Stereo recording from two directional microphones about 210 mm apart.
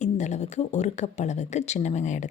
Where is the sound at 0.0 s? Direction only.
35° left (ahead or behind).